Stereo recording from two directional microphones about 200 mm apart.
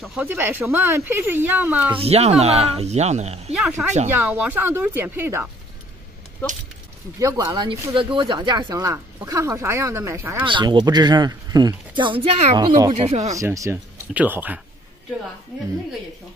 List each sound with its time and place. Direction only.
0.0 s speech: 5° right (ahead or behind)
2.0 s speech: 30° right (ahead or behind)
3.5 s speech: 5° right (ahead or behind)
7.2 s speech: 15° right (ahead or behind)
10.4 s speech: 25° right (ahead or behind)
12.5 s speech: 20° right (ahead or behind)
13.0 s speech: 30° right (ahead or behind)
13.3 s speech: 15° right (ahead or behind)